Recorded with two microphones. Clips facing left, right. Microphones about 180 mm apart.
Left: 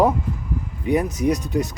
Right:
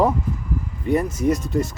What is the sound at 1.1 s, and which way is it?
Speech, centre (ahead or behind).